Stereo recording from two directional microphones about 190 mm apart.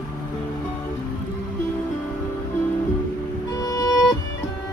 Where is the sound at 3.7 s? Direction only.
15° left (ahead or behind).